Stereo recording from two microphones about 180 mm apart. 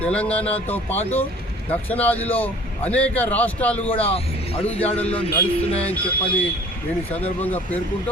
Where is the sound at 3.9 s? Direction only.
30° left (ahead or behind).